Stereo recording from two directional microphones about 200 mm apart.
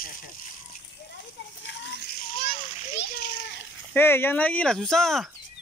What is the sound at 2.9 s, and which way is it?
Splash, 55° left (ahead or behind).